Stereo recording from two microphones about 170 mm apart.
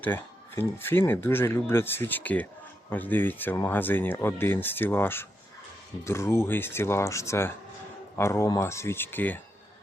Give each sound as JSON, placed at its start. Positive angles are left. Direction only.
{"t": 0.0, "sound": "speech", "side_deg": 10}